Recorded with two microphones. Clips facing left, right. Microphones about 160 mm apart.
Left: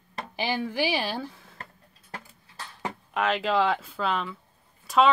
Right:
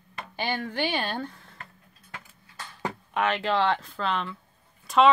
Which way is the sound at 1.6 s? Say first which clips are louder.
Left 4 dB; 35° left (ahead or behind).